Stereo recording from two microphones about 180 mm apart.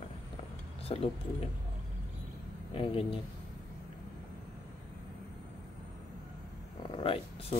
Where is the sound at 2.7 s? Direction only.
30° left (ahead or behind).